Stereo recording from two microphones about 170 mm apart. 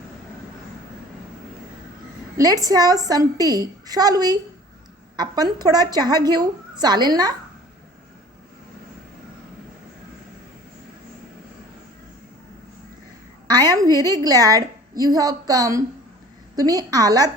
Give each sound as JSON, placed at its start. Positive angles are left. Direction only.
{"t": 2.4, "sound": "a woman's voice", "side_deg": -20}
{"t": 13.5, "sound": "a woman's voice", "side_deg": -25}